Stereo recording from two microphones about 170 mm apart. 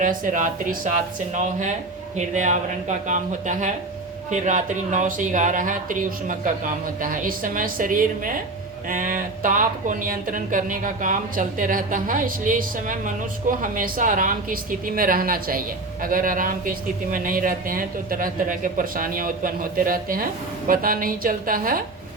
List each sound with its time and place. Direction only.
0.0 s a woman's voice: 50° right (ahead or behind)